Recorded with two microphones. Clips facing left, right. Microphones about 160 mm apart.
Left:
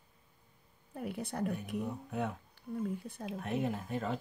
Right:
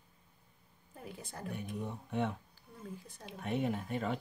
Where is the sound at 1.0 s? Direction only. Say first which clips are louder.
Left 10 dB; 65° left (ahead or behind).